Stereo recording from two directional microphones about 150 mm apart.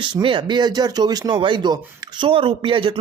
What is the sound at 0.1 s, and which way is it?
Speech, 35° right (ahead or behind).